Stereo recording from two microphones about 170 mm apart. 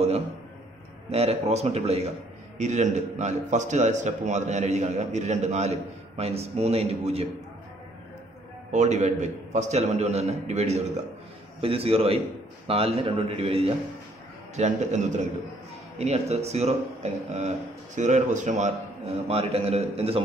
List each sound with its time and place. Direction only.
1.1 s a man's voice: 40° right (ahead or behind)
8.7 s a man's voice: 40° right (ahead or behind)
19.2 s speech: 35° right (ahead or behind)